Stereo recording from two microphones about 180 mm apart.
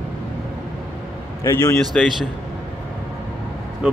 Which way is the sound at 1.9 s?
5° left (ahead or behind).